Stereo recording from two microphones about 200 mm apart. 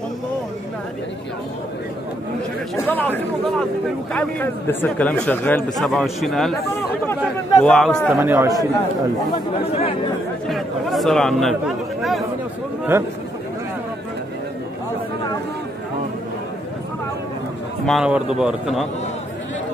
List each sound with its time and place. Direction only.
2.7 s speech: 10° left (ahead or behind)
7.6 s speech: 5° left (ahead or behind)
8.2 s speech: 15° right (ahead or behind)
9.3 s speech: 30° left (ahead or behind)
10.5 s speech: centre (ahead or behind)
17.8 s speech: 5° right (ahead or behind)